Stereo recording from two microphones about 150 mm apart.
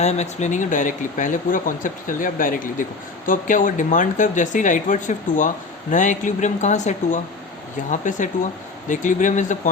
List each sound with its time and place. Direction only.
0.0 s speech: 50° left (ahead or behind)